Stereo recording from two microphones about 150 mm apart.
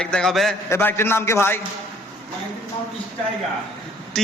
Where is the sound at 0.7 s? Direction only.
15° left (ahead or behind).